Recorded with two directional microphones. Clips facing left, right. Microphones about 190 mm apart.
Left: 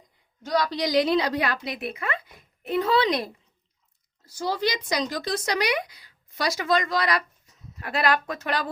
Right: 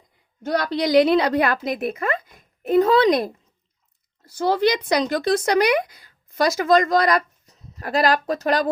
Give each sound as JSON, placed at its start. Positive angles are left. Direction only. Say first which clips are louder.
{"t": 0.4, "sound": "speech", "louder": "right 3 dB", "side_deg": -60}
{"t": 4.3, "sound": "speech", "louder": "right 7 dB", "side_deg": -60}